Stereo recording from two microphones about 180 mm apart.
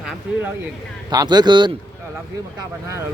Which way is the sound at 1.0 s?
25° right (ahead or behind).